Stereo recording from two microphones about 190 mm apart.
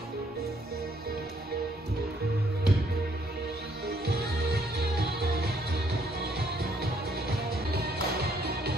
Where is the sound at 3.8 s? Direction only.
55° right (ahead or behind).